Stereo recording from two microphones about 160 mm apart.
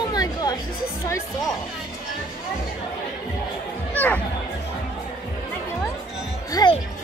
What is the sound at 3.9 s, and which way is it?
Speech, 10° left (ahead or behind).